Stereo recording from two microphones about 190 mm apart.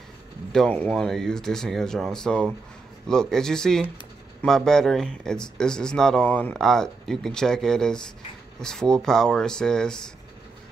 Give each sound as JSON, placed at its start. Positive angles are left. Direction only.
{"t": 0.5, "sound": "speech", "side_deg": 5}